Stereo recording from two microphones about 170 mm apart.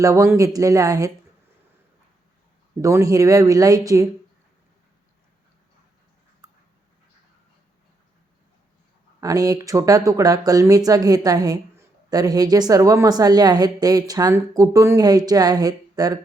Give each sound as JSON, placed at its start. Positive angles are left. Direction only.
{"t": 0.0, "sound": "a woman's voice", "side_deg": -15}
{"t": 2.8, "sound": "a woman's voice", "side_deg": -20}
{"t": 6.4, "sound": "a sound", "side_deg": -20}
{"t": 9.2, "sound": "a woman's voice", "side_deg": -20}